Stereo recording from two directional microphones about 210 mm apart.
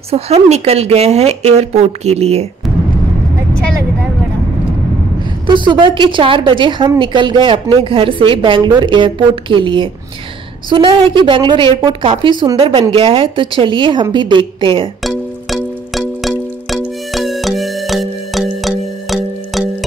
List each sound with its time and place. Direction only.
0.1 s a woman's voice: 30° right (ahead or behind)
5.5 s a woman's voice: 20° right (ahead or behind)
15.0 s music: centre (ahead or behind)